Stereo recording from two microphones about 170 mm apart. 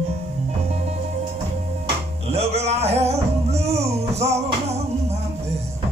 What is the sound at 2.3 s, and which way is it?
Music, 40° right (ahead or behind).